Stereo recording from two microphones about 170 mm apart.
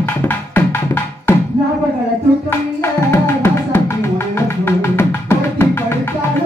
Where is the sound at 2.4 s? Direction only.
15° left (ahead or behind).